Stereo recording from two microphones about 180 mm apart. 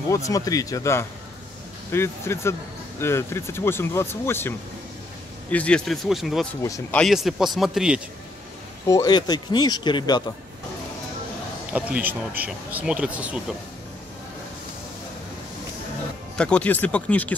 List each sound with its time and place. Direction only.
0.1 s a man's voice: 20° left (ahead or behind); by 6.4 s centre (ahead or behind)
6.6 s speech: 15° left (ahead or behind)
7.0 s a man's voice: centre (ahead or behind)
8.8 s speech: 20° left (ahead or behind)
11.7 s speech: 10° right (ahead or behind)
16.3 s speech: 5° left (ahead or behind)